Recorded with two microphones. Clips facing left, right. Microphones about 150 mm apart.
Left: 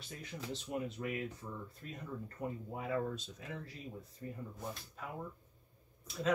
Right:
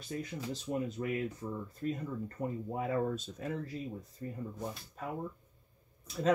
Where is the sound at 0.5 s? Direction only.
40° right (ahead or behind).